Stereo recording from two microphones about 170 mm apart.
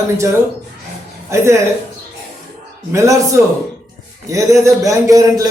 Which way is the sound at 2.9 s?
15° right (ahead or behind).